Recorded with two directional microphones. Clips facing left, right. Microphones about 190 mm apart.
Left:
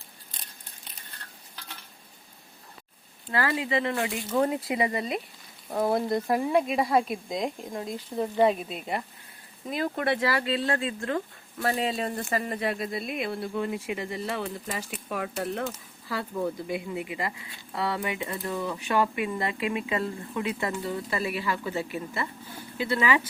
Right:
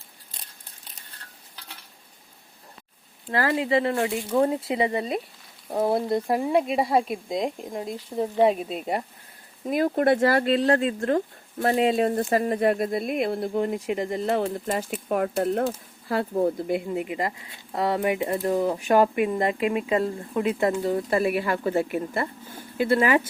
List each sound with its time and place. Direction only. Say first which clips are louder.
3.2 s speech: right 4 dB; 40° right (ahead or behind); by 8.3 s 15° right (ahead or behind)
8.7 s speech: right 4 dB; 40° right (ahead or behind)
13.5 s speech: right 5 dB; 40° right (ahead or behind)